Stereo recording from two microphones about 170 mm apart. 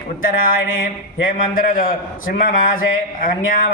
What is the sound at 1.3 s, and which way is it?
A man's voice, 55° left (ahead or behind).